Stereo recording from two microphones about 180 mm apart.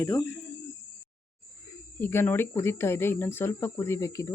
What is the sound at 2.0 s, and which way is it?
Speech, 10° left (ahead or behind).